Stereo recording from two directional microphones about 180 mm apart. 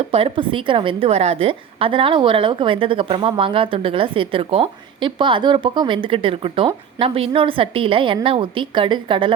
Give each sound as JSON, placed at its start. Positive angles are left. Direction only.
{"t": 0.1, "sound": "a woman's voice", "side_deg": -30}